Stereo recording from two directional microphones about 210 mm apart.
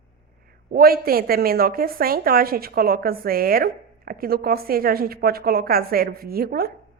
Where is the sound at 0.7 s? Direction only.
45° right (ahead or behind).